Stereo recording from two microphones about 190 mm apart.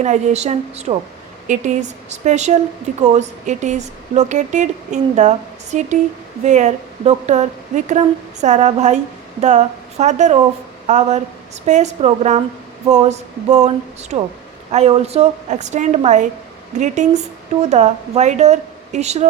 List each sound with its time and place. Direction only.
0.0 s speech: 35° right (ahead or behind)